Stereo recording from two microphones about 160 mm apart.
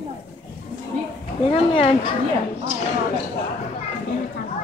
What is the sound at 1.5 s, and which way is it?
Speech, 35° left (ahead or behind).